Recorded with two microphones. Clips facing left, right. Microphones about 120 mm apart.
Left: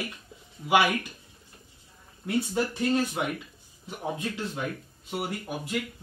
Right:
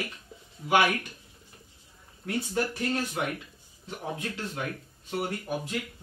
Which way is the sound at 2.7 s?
20° left (ahead or behind).